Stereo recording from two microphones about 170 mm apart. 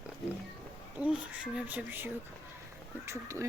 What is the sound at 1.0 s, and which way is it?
Speech, 5° right (ahead or behind).